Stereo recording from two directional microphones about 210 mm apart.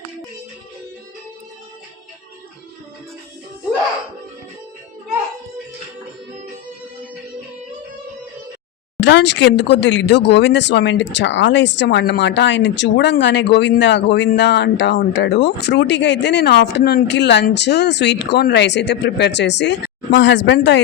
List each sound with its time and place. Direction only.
9.0 s speech: 55° left (ahead or behind)